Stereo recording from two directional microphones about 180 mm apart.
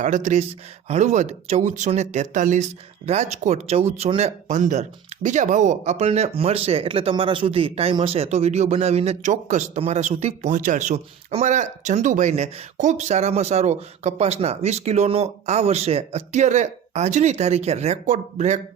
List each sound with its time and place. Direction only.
0.0 s speech: 40° right (ahead or behind)